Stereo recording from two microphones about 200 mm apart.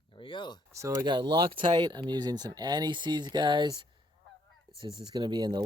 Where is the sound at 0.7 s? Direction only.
15° right (ahead or behind).